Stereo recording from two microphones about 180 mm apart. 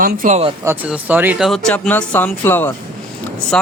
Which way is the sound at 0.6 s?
10° right (ahead or behind).